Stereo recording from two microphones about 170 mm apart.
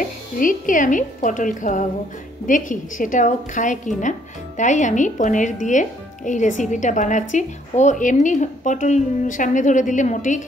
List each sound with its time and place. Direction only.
0.4 s speech: 50° left (ahead or behind)